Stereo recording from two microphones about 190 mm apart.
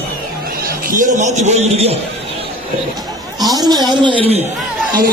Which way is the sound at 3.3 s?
20° right (ahead or behind).